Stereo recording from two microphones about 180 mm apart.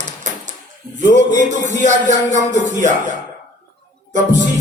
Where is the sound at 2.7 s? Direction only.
40° right (ahead or behind).